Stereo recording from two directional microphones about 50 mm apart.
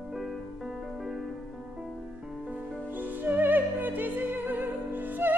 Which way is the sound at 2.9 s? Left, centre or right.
Right.